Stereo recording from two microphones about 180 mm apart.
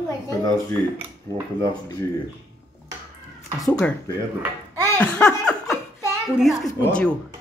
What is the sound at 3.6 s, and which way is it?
Speech, 5° left (ahead or behind).